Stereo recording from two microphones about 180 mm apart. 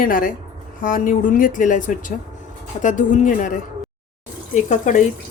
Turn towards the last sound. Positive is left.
turn(degrees=45)  # may be behind; listen again after turning